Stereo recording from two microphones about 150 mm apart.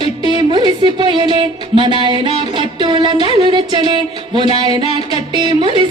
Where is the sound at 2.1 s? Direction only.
35° right (ahead or behind).